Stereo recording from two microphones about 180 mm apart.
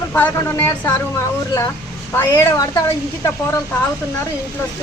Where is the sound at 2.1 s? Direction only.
15° left (ahead or behind).